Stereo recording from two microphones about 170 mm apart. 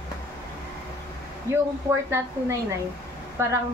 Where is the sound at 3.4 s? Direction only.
15° right (ahead or behind).